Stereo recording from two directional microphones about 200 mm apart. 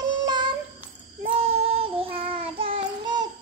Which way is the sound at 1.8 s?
25° right (ahead or behind).